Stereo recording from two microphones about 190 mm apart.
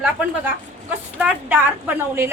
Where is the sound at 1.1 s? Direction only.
10° right (ahead or behind).